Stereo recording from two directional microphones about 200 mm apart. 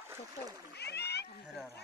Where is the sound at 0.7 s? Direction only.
55° left (ahead or behind).